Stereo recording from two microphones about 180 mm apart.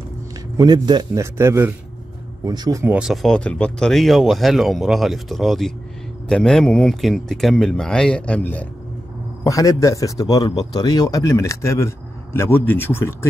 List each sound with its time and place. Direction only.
0.6 s a man's voice: 25° right (ahead or behind)
2.4 s speech: 20° right (ahead or behind); by 8.6 s 10° left (ahead or behind)
9.4 s speech: 20° left (ahead or behind)